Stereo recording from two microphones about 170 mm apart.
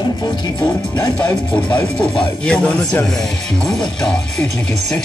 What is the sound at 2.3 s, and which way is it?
Speech, 5° left (ahead or behind).